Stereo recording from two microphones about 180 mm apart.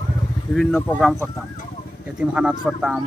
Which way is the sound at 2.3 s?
5° right (ahead or behind).